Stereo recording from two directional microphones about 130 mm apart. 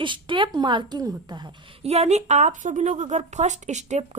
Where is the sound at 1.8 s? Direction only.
55° right (ahead or behind).